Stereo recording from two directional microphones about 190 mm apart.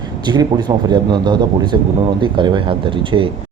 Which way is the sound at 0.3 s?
20° right (ahead or behind).